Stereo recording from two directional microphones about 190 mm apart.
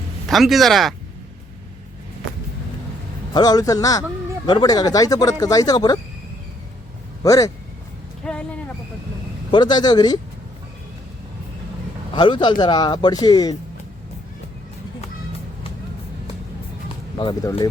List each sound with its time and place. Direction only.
0.3 s speech: centre (ahead or behind)
3.3 s speech: 20° left (ahead or behind)
7.2 s speech: 20° left (ahead or behind)
8.2 s a sound: 5° left (ahead or behind)
9.5 s speech: 25° left (ahead or behind)
12.1 s speech: 25° left (ahead or behind)
17.2 s speech: 25° left (ahead or behind)